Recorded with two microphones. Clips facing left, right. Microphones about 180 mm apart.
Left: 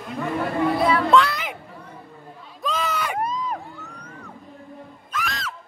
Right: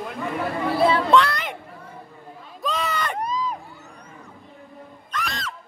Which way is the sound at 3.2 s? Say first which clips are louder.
Even; 55° left (ahead or behind).